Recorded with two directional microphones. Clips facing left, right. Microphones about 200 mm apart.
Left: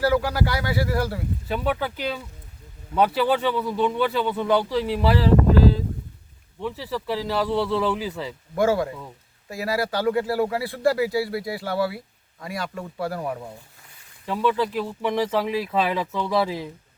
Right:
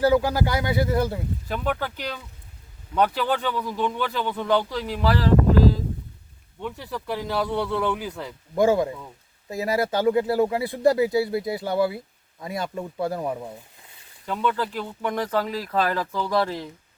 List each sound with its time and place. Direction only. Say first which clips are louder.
0.0 s speech: right 2 dB; 20° right (ahead or behind)
1.5 s a man's voice: left 2 dB; 5° left (ahead or behind)
6.7 s speech: left 3 dB; centre (ahead or behind)
8.5 s speech: right 2 dB; 20° right (ahead or behind)
14.3 s speech: left 3 dB; 5° left (ahead or behind)